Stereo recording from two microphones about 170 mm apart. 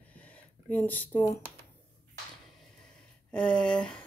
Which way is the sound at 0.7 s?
10° left (ahead or behind).